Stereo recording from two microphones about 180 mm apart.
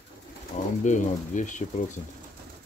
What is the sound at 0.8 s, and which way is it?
Speech, 45° left (ahead or behind).